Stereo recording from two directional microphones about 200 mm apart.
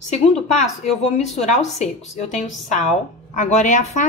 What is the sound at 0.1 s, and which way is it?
Speech, 35° left (ahead or behind).